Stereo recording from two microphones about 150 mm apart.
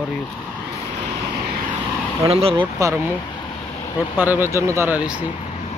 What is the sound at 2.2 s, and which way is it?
Speech, 40° right (ahead or behind).